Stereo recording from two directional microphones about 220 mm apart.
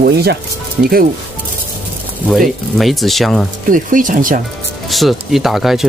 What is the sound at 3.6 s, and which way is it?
Speech, 40° right (ahead or behind).